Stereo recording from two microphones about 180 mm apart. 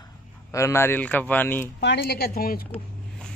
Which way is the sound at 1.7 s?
65° left (ahead or behind).